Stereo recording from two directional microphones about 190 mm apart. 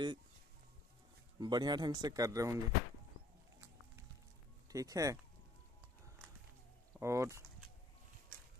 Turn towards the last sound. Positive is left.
turn(degrees=-15)  # may be behind; listen again after turning